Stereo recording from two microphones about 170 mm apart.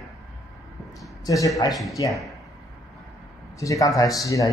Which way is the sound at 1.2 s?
20° left (ahead or behind).